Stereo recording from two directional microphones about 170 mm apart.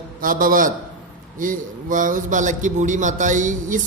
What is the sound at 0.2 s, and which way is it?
Mantra, 55° right (ahead or behind).